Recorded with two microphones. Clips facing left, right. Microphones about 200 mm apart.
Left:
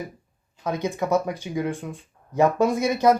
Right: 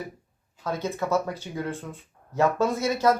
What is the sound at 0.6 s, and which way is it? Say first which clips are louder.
Speech: left 3 dB; 15° left (ahead or behind).